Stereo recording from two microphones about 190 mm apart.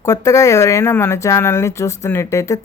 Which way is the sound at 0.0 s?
15° left (ahead or behind).